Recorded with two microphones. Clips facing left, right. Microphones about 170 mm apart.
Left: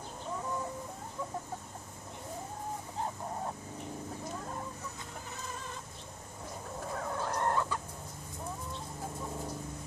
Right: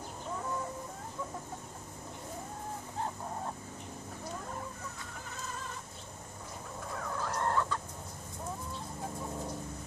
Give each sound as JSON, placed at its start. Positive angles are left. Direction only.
{"t": 7.0, "sound": "fowl", "side_deg": 30}